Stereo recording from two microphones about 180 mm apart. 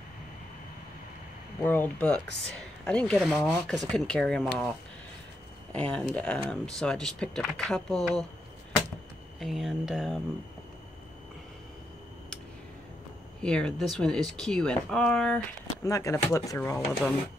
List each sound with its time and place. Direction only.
1.6 s speech: 10° left (ahead or behind)
9.4 s speech: centre (ahead or behind)
13.4 s speech: 5° left (ahead or behind)
15.8 s speech: 15° left (ahead or behind)